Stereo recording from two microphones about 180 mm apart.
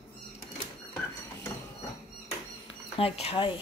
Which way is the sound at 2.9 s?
35° left (ahead or behind).